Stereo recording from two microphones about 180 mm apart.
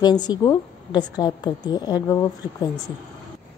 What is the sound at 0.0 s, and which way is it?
A woman's voice, 25° left (ahead or behind).